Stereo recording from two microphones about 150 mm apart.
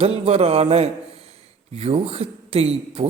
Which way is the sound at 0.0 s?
45° right (ahead or behind).